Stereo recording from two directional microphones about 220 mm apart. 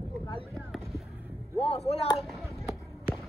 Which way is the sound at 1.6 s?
30° left (ahead or behind).